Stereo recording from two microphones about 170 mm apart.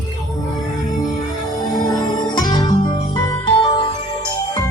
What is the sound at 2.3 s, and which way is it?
Music, 25° left (ahead or behind).